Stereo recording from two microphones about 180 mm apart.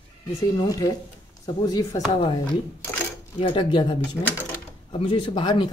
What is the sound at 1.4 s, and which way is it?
Speech, 20° left (ahead or behind).